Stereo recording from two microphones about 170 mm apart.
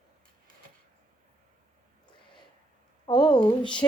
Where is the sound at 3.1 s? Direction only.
25° left (ahead or behind).